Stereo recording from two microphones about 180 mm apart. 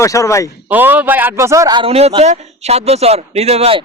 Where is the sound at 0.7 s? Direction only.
10° right (ahead or behind); by 3.8 s 30° right (ahead or behind).